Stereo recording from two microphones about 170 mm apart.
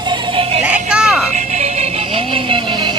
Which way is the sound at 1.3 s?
45° right (ahead or behind).